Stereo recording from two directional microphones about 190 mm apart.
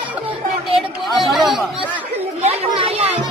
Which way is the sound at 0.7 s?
30° right (ahead or behind).